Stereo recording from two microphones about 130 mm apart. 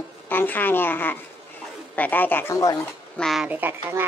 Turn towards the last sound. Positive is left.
turn(degrees=-15)  # may be behind; listen again after turning